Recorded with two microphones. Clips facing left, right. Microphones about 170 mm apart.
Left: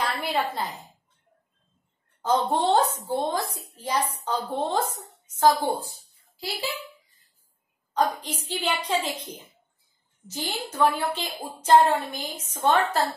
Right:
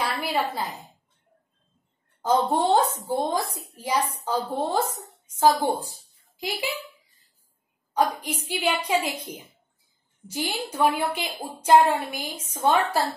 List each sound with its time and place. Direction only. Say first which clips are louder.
0.0 s a sound: right 1 dB; centre (ahead or behind)
2.2 s a woman's voice: right 1 dB; 10° right (ahead or behind)
7.9 s a woman's voice: right 1 dB; 10° right (ahead or behind)